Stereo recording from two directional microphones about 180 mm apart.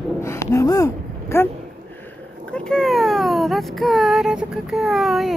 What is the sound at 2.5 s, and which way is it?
Child singing, 5° left (ahead or behind).